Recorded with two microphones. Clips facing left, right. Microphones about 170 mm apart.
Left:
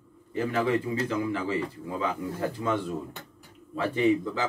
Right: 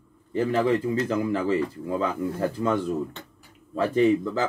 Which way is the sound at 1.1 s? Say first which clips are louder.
Right 4 dB; 40° right (ahead or behind).